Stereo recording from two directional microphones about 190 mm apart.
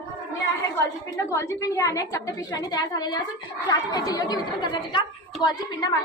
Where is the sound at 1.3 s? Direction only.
15° left (ahead or behind).